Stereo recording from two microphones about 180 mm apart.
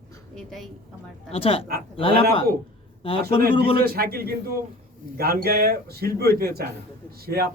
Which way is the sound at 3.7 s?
60° right (ahead or behind).